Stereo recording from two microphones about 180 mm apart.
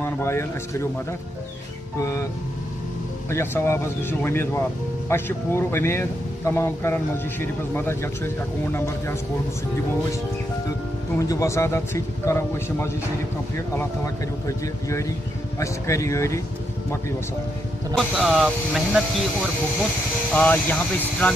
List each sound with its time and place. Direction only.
0.0 s speech: 15° left (ahead or behind)
2.0 s speech: 15° left (ahead or behind)
3.3 s speech: 15° left (ahead or behind)
11.1 s speech: 15° left (ahead or behind)
15.6 s speech: 15° left (ahead or behind)
17.9 s speech: centre (ahead or behind)
20.3 s speech: 10° left (ahead or behind)